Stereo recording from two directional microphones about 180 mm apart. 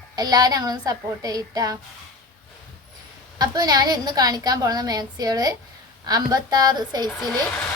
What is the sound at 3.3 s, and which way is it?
A woman's voice, 20° right (ahead or behind).